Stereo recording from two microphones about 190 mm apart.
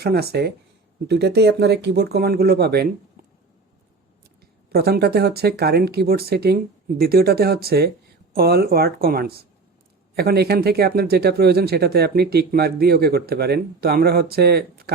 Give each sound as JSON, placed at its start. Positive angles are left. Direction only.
{"t": 0.0, "sound": "speech", "side_deg": -55}
{"t": 4.7, "sound": "speech", "side_deg": -55}